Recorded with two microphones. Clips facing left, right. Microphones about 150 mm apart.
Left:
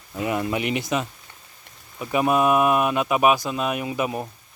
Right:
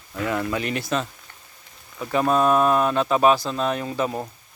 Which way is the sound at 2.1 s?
10° left (ahead or behind).